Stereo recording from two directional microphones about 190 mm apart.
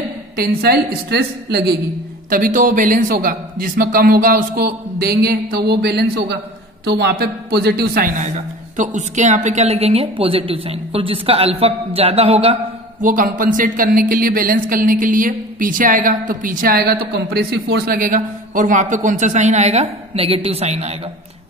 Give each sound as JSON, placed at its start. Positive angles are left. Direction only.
{"t": 0.6, "sound": "a man's voice", "side_deg": -55}
{"t": 13.0, "sound": "speech", "side_deg": -45}